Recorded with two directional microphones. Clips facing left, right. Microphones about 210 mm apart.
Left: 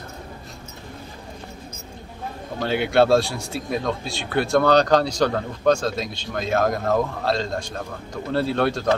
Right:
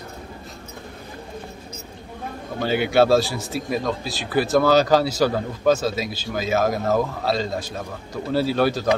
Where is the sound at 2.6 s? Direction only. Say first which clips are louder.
Right 1 dB; centre (ahead or behind).